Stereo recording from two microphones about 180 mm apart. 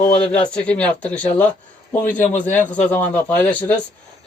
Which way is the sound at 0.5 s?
5° left (ahead or behind).